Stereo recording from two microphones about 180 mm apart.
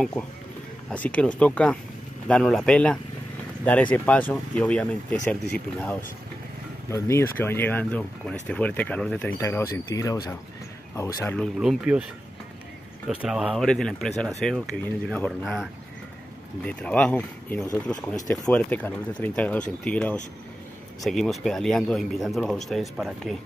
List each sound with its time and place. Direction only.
1.1 s speech: 5° left (ahead or behind)
6.9 s speech: 15° left (ahead or behind)
9.4 s speech: 15° left (ahead or behind)
11.2 s speech: 5° left (ahead or behind)
13.1 s speech: 5° right (ahead or behind)
18.1 s speech: 20° left (ahead or behind)
18.5 s speech: 5° left (ahead or behind)